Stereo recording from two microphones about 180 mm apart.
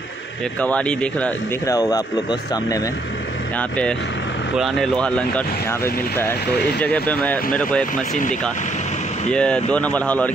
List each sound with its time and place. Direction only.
0.6 s speech: 5° left (ahead or behind)
1.7 s speech: 20° left (ahead or behind)
3.5 s speech: 5° left (ahead or behind)
9.3 s speech: 5° left (ahead or behind)